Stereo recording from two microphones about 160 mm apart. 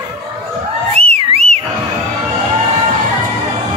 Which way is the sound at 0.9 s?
40° right (ahead or behind).